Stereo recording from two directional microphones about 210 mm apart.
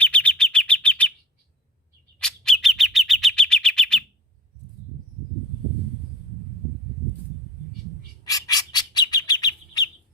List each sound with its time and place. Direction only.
0.0 s chirp: 5° left (ahead or behind)
2.1 s chirp: 5° left (ahead or behind)
8.2 s bird: 15° left (ahead or behind)